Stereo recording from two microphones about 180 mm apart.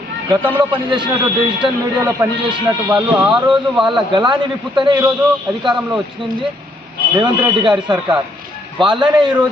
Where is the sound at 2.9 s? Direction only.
5° right (ahead or behind).